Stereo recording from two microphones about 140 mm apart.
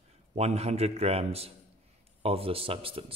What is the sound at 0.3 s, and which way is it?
A man's voice, 50° right (ahead or behind).